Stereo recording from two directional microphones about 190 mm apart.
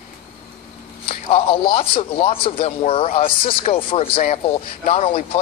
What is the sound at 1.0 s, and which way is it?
A man's voice, 30° left (ahead or behind).